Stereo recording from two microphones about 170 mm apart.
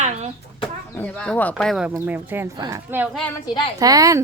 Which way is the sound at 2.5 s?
25° right (ahead or behind).